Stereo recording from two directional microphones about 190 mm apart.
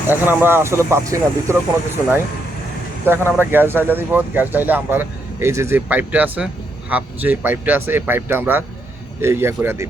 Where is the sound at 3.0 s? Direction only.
10° right (ahead or behind).